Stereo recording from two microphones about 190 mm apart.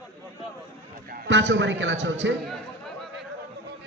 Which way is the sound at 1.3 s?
75° right (ahead or behind).